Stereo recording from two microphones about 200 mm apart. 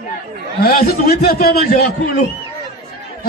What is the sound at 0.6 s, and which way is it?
A man's voice, 50° left (ahead or behind).